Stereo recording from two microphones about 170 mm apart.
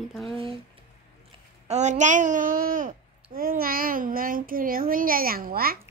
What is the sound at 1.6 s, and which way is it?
A child's voice, 45° right (ahead or behind).